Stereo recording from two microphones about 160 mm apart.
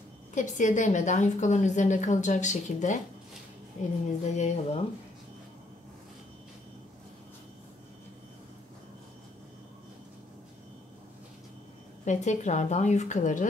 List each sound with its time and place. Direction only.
0.3 s a woman's voice: 50° left (ahead or behind)
4.4 s a woman's voice: 45° left (ahead or behind)
12.0 s a woman's voice: 50° left (ahead or behind)